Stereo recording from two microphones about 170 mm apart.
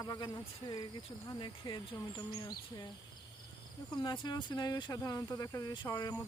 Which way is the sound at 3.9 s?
25° left (ahead or behind).